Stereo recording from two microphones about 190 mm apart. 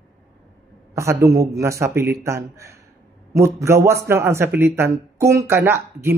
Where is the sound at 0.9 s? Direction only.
15° right (ahead or behind).